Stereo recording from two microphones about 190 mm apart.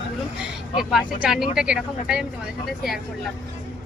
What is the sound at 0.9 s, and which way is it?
Speech, centre (ahead or behind).